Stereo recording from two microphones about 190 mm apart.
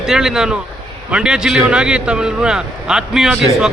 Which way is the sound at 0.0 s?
5° right (ahead or behind).